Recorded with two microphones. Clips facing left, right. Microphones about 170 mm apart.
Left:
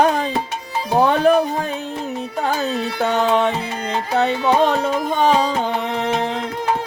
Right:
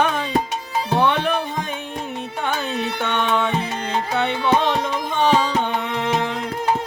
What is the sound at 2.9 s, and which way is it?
Music, 40° left (ahead or behind).